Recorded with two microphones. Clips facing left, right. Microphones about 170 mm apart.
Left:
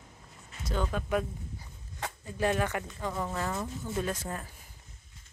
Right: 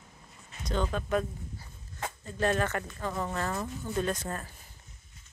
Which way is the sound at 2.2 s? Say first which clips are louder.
Right 1 dB; 10° left (ahead or behind).